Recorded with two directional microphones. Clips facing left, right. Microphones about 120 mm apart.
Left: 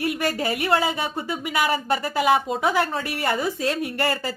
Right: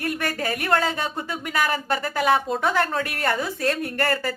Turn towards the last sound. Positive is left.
turn(degrees=10)  # may be behind; listen again after turning